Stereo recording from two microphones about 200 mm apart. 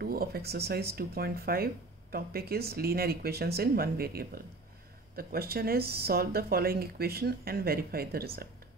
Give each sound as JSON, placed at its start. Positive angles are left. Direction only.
{"t": 0.0, "sound": "speech", "side_deg": -50}